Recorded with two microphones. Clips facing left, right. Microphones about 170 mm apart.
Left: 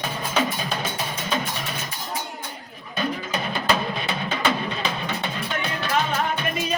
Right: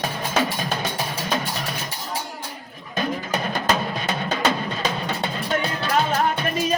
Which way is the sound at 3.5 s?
45° right (ahead or behind).